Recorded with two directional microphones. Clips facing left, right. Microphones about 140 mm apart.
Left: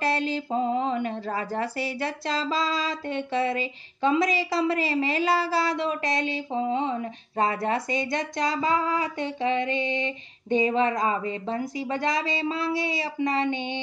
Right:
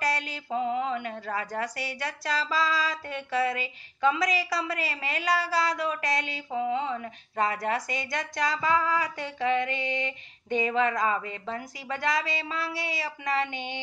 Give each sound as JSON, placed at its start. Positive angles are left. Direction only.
{"t": 0.0, "sound": "speech", "side_deg": 25}